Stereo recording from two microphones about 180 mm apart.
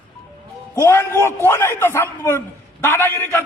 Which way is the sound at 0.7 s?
15° left (ahead or behind).